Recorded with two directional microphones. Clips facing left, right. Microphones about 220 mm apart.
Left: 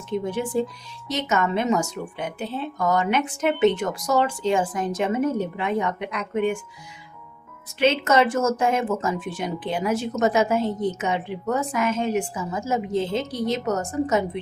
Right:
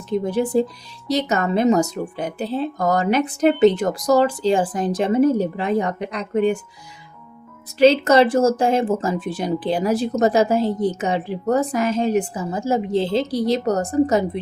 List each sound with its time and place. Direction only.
0.1 s speech: 35° right (ahead or behind)
7.8 s speech: 35° right (ahead or behind)